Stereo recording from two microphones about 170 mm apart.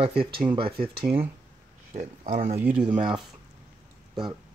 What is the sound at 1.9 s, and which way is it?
Speech, 40° right (ahead or behind).